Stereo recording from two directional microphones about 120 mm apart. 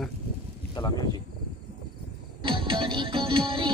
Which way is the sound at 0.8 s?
30° left (ahead or behind).